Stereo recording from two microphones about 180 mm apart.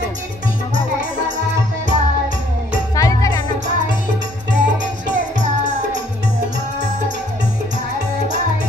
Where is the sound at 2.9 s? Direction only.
20° left (ahead or behind).